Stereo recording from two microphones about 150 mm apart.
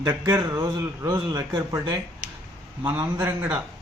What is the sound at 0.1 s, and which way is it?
A man's voice, 20° right (ahead or behind).